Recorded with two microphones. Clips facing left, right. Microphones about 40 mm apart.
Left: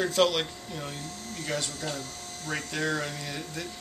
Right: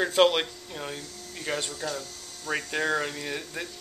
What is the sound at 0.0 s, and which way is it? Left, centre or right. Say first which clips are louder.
Speech: right 3 dB; centre.